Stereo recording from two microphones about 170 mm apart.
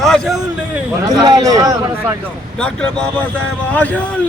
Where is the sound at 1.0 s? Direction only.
25° right (ahead or behind).